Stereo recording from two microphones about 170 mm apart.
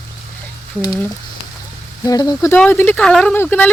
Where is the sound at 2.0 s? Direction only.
20° left (ahead or behind).